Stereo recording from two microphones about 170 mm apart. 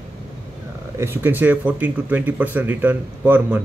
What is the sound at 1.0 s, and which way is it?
Speech, 15° right (ahead or behind).